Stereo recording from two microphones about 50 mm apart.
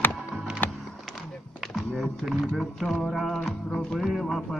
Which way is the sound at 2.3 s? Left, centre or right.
Centre.